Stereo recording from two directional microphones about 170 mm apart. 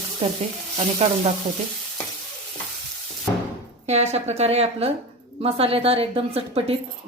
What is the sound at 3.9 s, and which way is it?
Speech, 40° right (ahead or behind).